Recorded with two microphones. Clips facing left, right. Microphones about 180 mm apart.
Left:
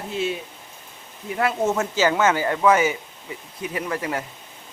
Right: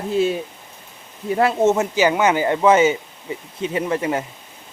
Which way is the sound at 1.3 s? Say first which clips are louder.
Right 5 dB; 25° right (ahead or behind).